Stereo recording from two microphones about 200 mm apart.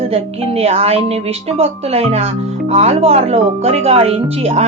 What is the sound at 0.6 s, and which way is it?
Speech, 30° right (ahead or behind).